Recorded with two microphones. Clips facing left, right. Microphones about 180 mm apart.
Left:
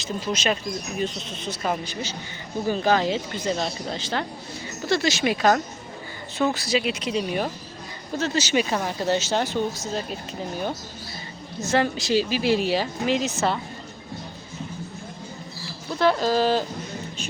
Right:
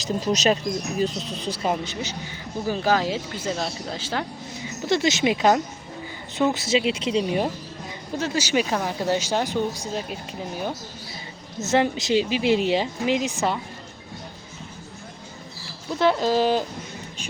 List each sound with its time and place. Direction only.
0.0 s speech: 40° right (ahead or behind)
1.6 s speech: 20° right (ahead or behind)
2.6 s speech: 5° right (ahead or behind)
4.9 s speech: 20° right (ahead or behind)
8.2 s speech: 10° right (ahead or behind)
11.6 s speech: 20° right (ahead or behind)
16.0 s speech: 20° right (ahead or behind)